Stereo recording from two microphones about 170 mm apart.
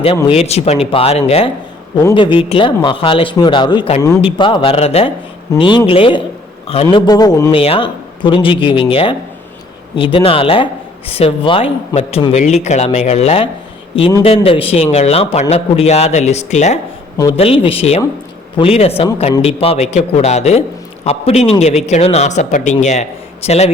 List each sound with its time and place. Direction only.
0.3 s a man's voice: 40° left (ahead or behind); by 7.5 s 20° left (ahead or behind)
7.5 s a man's voice: 35° left (ahead or behind)